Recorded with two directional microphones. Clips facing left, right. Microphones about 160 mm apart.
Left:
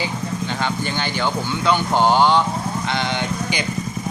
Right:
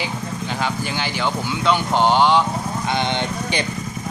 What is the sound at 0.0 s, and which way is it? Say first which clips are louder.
Speech: left 2 dB; 5° right (ahead or behind).